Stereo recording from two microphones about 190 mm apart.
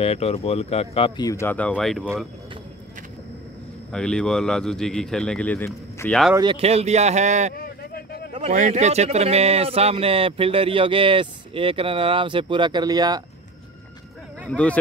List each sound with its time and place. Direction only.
0.0 s speech: 30° left (ahead or behind); by 2.0 s centre (ahead or behind)
3.9 s speech: 5° left (ahead or behind)
6.3 s a man's voice: 25° right (ahead or behind)
7.5 s a sound: 50° left (ahead or behind)
8.3 s speech: 35° right (ahead or behind); by 13.2 s 20° right (ahead or behind)
14.5 s speech: 5° left (ahead or behind)